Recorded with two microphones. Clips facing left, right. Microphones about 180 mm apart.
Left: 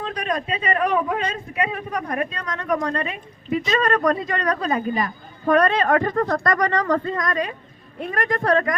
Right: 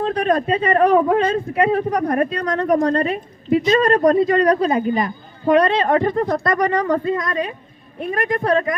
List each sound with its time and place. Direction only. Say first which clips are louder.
0.2 s a man's voice: right 7 dB; 50° right (ahead or behind); by 6.3 s 25° right (ahead or behind)
6.5 s speech: right 3 dB; 10° right (ahead or behind)
7.2 s a man's voice: right 1 dB; 25° right (ahead or behind)